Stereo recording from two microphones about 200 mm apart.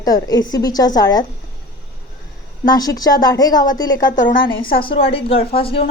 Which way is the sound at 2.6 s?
20° left (ahead or behind).